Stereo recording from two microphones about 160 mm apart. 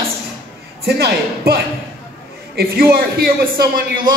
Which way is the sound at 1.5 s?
75° right (ahead or behind).